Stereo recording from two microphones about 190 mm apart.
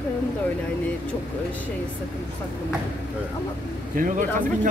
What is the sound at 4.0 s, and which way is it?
Speech, 40° right (ahead or behind).